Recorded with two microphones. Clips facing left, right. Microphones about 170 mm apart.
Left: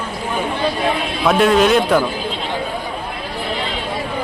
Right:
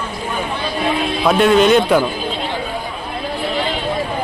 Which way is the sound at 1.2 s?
Centre (ahead or behind).